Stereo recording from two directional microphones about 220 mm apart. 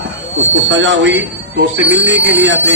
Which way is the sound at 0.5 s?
55° right (ahead or behind).